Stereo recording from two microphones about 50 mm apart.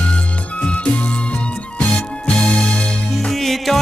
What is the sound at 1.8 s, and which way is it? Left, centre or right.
Music, left.